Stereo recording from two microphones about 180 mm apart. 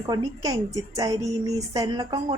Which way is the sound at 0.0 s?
20° right (ahead or behind).